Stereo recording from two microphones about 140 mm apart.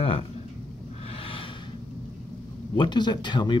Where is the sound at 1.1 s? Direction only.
40° left (ahead or behind).